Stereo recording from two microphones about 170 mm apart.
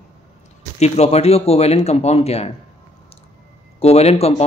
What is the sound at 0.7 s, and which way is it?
Speech, 40° left (ahead or behind).